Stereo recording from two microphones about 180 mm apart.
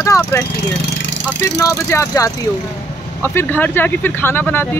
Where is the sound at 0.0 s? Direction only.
15° left (ahead or behind).